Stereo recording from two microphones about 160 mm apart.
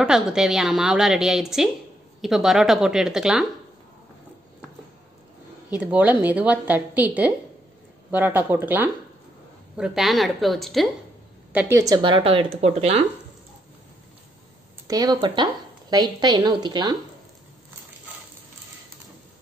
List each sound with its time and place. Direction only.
0.0 s a woman's voice: 5° right (ahead or behind)
5.7 s a woman's voice: 10° right (ahead or behind)
11.5 s speech: 20° right (ahead or behind); by 13.0 s 40° right (ahead or behind)
14.9 s speech: 25° right (ahead or behind)